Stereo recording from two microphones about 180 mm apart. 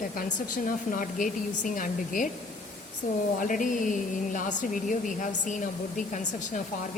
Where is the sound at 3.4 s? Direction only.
45° left (ahead or behind).